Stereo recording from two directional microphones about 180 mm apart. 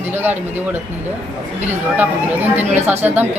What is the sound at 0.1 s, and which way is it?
Speech, 10° right (ahead or behind).